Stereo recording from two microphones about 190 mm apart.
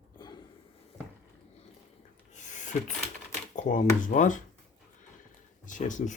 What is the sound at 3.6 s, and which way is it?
Speech, 40° left (ahead or behind).